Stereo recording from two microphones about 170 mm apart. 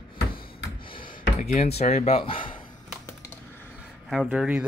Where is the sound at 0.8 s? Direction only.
30° left (ahead or behind).